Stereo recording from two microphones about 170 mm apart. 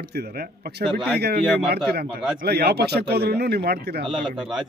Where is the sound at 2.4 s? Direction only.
70° right (ahead or behind).